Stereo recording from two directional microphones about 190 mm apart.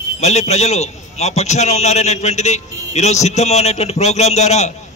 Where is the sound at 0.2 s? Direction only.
35° left (ahead or behind).